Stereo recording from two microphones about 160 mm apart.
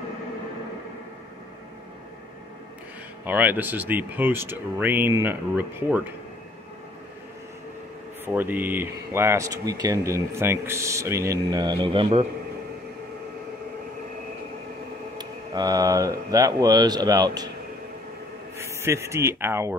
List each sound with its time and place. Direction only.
3.3 s speech: 10° right (ahead or behind)
8.3 s speech: 10° right (ahead or behind); by 12.3 s 35° right (ahead or behind)
15.1 s speech: 25° right (ahead or behind)
18.6 s speech: 15° right (ahead or behind)